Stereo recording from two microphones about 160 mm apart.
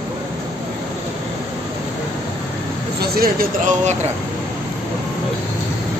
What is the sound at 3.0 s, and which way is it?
Speech, 70° right (ahead or behind).